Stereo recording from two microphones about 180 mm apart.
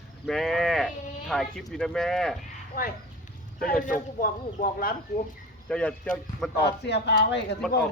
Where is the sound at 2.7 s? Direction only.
55° left (ahead or behind).